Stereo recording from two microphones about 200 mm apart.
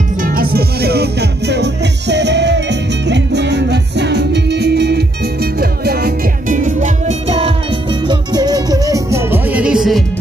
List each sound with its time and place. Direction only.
0.2 s music: 45° right (ahead or behind); by 10.0 s centre (ahead or behind)